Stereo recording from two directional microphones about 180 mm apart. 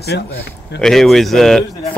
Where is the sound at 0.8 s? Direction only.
Centre (ahead or behind).